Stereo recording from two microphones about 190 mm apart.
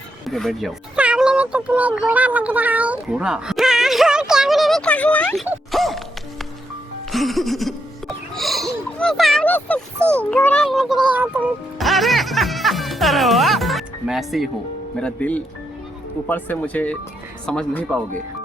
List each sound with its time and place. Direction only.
0.3 s meow: centre (ahead or behind)
5.7 s music: centre (ahead or behind)
7.1 s speech: centre (ahead or behind)